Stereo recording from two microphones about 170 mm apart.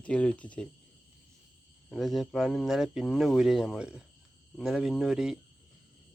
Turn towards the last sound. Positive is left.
turn(degrees=-5)  # may be behind; listen again after turning